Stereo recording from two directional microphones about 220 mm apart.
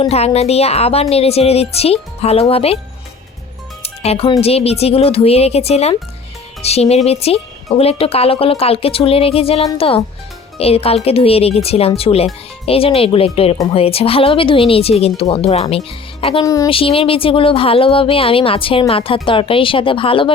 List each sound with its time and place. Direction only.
0.0 s a woman's voice: 30° left (ahead or behind)
3.8 s a woman's voice: 25° left (ahead or behind)